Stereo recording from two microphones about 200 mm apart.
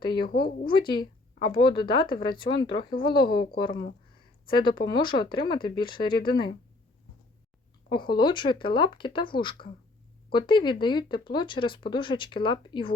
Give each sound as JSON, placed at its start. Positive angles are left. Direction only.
{"t": 0.1, "sound": "speech", "side_deg": 50}
{"t": 0.9, "sound": "a sound", "side_deg": 25}
{"t": 1.5, "sound": "speech", "side_deg": 25}
{"t": 4.4, "sound": "speech", "side_deg": 25}
{"t": 7.9, "sound": "speech", "side_deg": 20}